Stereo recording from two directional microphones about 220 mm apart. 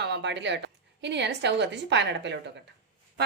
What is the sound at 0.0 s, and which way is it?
A woman's voice, 50° right (ahead or behind).